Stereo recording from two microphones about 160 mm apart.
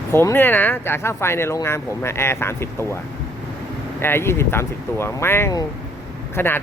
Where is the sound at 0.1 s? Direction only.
15° left (ahead or behind).